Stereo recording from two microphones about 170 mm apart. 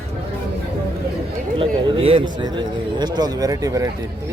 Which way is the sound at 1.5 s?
35° right (ahead or behind).